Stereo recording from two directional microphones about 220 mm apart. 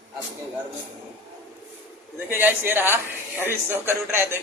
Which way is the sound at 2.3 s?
10° right (ahead or behind).